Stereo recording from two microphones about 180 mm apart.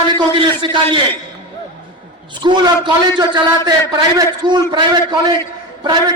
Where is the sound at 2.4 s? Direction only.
25° right (ahead or behind).